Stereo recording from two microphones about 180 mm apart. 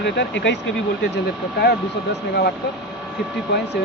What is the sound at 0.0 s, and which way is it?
Speech, 75° left (ahead or behind).